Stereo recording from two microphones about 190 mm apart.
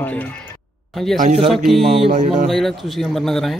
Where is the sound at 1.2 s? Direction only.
35° right (ahead or behind).